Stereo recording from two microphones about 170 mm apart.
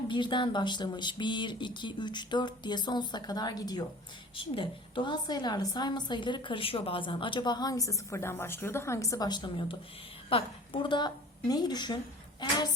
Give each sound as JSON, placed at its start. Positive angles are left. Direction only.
{"t": 0.1, "sound": "a woman's voice", "side_deg": 25}